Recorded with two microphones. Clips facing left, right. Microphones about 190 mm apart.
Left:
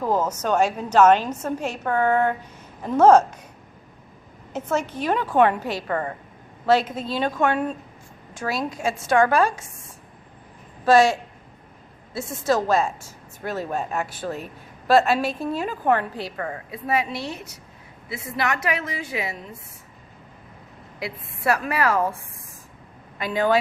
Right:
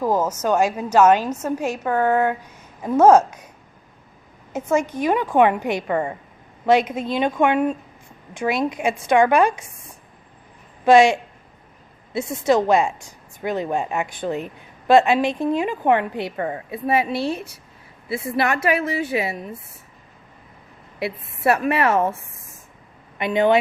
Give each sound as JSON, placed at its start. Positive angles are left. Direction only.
{"t": 0.0, "sound": "a woman's voice", "side_deg": -10}
{"t": 4.5, "sound": "a woman's voice", "side_deg": -10}
{"t": 10.8, "sound": "a woman's voice", "side_deg": -15}
{"t": 14.8, "sound": "a woman's voice", "side_deg": 0}
{"t": 15.6, "sound": "a woman's voice", "side_deg": -15}
{"t": 21.0, "sound": "a woman's voice", "side_deg": -25}
{"t": 23.1, "sound": "speech", "side_deg": -20}